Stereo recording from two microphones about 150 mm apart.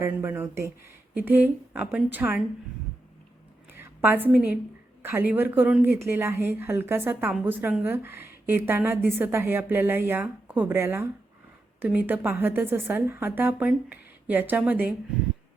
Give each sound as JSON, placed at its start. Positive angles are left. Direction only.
{"t": 0.0, "sound": "speech", "side_deg": -15}
{"t": 3.8, "sound": "a woman's voice", "side_deg": -15}